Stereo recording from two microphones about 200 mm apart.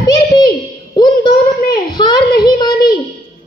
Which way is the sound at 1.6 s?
50° left (ahead or behind).